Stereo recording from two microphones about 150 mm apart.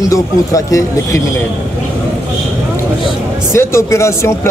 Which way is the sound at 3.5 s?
20° left (ahead or behind).